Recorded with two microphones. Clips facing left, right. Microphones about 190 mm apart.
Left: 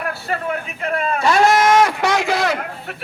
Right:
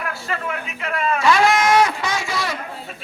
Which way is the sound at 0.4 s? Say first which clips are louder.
Left 4 dB; 40° left (ahead or behind).